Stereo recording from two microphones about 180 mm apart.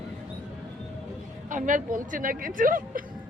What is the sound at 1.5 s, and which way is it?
A woman's voice, 45° right (ahead or behind).